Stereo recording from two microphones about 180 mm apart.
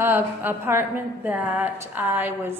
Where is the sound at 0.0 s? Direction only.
10° right (ahead or behind).